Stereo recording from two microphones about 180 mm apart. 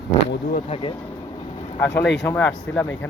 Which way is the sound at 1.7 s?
15° left (ahead or behind).